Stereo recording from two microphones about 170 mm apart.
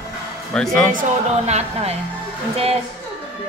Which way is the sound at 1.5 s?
40° right (ahead or behind).